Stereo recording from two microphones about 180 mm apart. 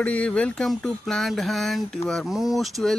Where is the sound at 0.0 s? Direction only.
5° left (ahead or behind).